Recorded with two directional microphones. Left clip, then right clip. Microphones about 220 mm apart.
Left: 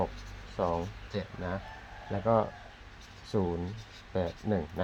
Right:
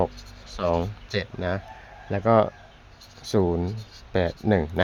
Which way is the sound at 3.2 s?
45° right (ahead or behind).